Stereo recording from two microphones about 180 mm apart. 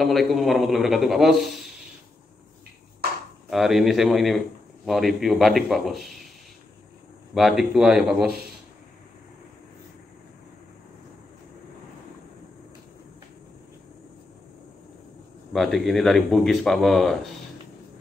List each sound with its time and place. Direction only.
0.0 s speech: centre (ahead or behind)
3.4 s speech: centre (ahead or behind)
7.3 s speech: centre (ahead or behind)
15.5 s speech: centre (ahead or behind)